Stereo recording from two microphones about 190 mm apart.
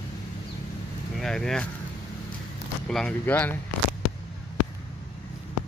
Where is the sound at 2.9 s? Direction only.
5° left (ahead or behind).